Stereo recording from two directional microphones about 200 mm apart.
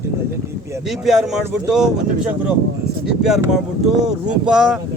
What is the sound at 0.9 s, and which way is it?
Speech, centre (ahead or behind).